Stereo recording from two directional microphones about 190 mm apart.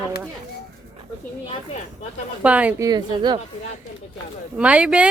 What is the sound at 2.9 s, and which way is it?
Speech, 25° right (ahead or behind).